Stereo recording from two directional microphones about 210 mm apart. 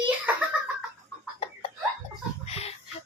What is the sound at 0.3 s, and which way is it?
Giggle, 10° right (ahead or behind).